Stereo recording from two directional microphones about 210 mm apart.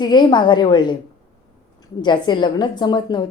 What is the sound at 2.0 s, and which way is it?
A woman's voice, 20° left (ahead or behind).